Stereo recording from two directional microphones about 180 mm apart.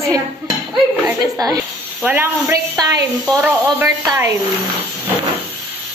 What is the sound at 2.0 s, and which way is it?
A woman's voice, 10° right (ahead or behind).